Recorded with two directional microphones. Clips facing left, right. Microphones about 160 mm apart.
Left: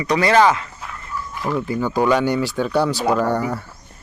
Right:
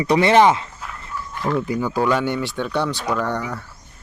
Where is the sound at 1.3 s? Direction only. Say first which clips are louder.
Right 1 dB; 5° left (ahead or behind).